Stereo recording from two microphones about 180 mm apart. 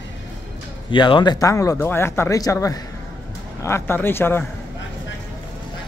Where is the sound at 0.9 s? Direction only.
25° left (ahead or behind).